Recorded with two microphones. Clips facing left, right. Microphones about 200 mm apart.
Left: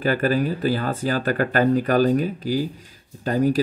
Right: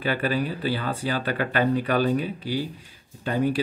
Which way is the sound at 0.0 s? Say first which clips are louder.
Left 5 dB; 45° left (ahead or behind).